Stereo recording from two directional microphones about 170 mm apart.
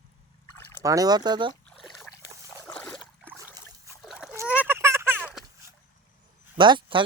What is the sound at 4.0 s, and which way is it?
Splash, centre (ahead or behind).